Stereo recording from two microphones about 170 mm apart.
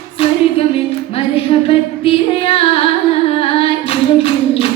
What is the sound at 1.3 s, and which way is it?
Female singing, 35° left (ahead or behind).